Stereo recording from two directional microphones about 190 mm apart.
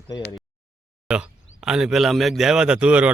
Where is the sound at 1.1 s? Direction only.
5° right (ahead or behind).